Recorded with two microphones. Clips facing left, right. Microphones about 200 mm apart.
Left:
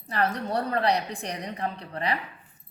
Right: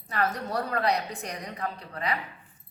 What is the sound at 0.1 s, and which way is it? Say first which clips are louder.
A woman's voice: left 2 dB; 30° left (ahead or behind).